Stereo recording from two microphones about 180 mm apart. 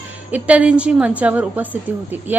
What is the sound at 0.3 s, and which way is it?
A woman's voice, 10° right (ahead or behind).